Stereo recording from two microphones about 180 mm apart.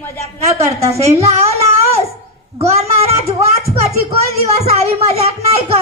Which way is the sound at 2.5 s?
35° right (ahead or behind).